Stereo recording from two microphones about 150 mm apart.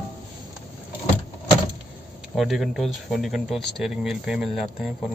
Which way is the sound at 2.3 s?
Centre (ahead or behind).